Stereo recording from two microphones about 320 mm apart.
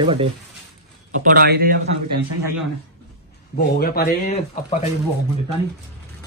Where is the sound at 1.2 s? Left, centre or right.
Right.